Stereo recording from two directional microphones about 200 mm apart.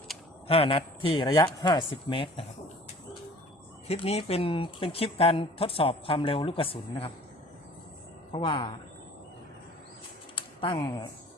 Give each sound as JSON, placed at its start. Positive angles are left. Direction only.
{"t": 0.4, "sound": "speech", "side_deg": 30}
{"t": 3.8, "sound": "speech", "side_deg": 30}
{"t": 8.3, "sound": "speech", "side_deg": 25}
{"t": 10.3, "sound": "a sound", "side_deg": 25}